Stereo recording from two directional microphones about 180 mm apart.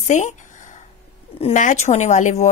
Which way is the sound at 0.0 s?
40° left (ahead or behind).